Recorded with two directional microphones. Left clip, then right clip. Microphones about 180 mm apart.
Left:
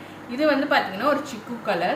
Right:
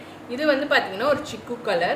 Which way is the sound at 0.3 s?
55° right (ahead or behind).